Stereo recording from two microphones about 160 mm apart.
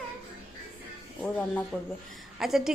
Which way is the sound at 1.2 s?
10° left (ahead or behind).